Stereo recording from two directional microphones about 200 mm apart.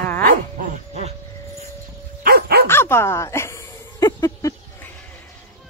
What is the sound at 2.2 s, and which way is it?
Dog, 50° right (ahead or behind).